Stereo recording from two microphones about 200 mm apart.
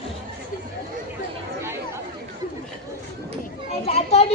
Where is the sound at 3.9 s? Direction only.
30° left (ahead or behind).